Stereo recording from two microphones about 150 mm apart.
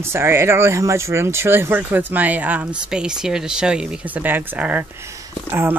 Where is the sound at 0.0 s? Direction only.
15° right (ahead or behind).